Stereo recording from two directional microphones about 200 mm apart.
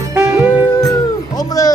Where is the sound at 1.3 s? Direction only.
20° left (ahead or behind).